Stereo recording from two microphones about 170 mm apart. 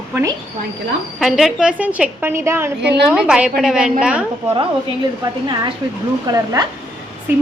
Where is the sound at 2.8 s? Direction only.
80° right.